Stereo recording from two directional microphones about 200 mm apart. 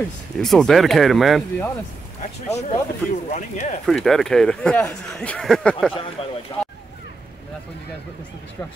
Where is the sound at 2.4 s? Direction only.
35° left (ahead or behind).